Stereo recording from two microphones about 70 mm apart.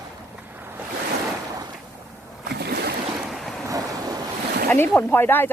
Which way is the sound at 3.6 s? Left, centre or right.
Right.